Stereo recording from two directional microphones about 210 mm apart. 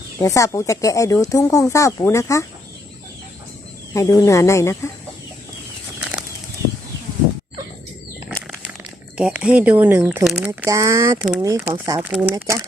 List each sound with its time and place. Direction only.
0.2 s speech: 15° left (ahead or behind)
3.9 s speech: 15° left (ahead or behind)
8.4 s crumpling: 5° right (ahead or behind)
10.2 s speech: 5° right (ahead or behind)
12.3 s speech: 15° right (ahead or behind)